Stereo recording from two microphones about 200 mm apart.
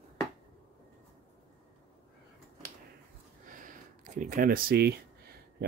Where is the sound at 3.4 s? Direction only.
40° right (ahead or behind).